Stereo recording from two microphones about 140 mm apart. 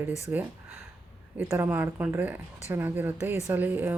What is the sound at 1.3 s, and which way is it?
Speech, 15° right (ahead or behind).